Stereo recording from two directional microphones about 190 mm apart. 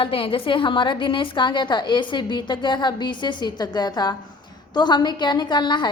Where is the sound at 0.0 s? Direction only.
30° left (ahead or behind).